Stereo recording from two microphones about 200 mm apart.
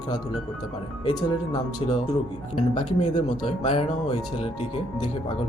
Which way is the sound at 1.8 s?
25° left (ahead or behind).